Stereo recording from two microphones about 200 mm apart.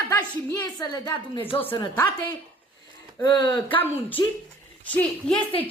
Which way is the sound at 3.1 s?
20° left (ahead or behind).